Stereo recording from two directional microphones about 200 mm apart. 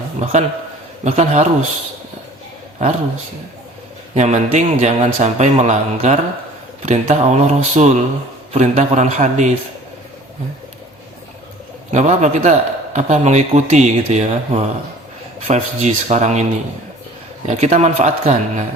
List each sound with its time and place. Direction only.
0.2 s a man's voice: 35° right (ahead or behind)
4.1 s a man's voice: 35° right (ahead or behind)
11.9 s a man's voice: 35° right (ahead or behind)